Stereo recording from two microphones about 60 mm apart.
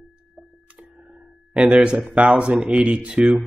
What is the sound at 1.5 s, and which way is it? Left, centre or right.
Speech, centre.